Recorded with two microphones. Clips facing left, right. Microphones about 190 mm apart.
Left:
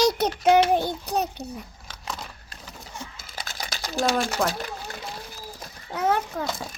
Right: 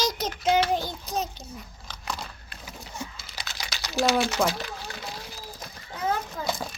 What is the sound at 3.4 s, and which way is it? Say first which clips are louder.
Computer keyboard: left 3 dB; 50° left (ahead or behind).